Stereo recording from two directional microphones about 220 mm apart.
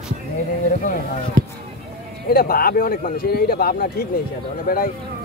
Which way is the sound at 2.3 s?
45° left (ahead or behind).